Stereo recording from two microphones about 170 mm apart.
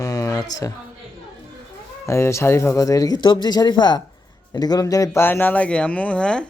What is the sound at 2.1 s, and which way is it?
Speech, 15° left (ahead or behind).